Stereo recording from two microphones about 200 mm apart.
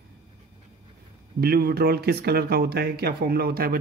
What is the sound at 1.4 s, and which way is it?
Speech, 50° right (ahead or behind).